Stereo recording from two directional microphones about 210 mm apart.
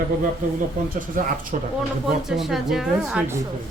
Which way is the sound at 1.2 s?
40° right (ahead or behind).